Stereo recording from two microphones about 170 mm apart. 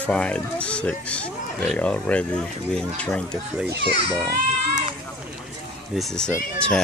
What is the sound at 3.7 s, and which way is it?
Speech, 70° right (ahead or behind).